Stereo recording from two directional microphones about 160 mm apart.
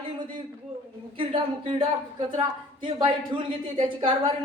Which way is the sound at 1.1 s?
35° right (ahead or behind).